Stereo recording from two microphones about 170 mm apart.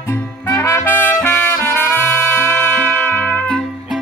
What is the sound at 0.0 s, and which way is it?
Music, 15° left (ahead or behind).